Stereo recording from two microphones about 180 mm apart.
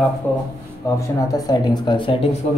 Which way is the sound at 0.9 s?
20° left (ahead or behind).